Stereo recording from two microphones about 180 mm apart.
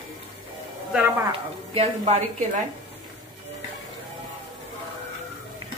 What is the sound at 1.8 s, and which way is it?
Speech, 35° right (ahead or behind).